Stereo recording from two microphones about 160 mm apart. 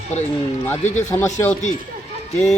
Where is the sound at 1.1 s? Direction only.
15° left (ahead or behind).